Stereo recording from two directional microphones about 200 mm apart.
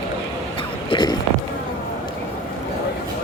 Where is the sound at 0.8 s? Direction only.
20° left (ahead or behind).